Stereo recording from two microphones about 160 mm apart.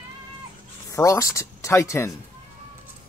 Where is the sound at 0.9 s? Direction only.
20° left (ahead or behind).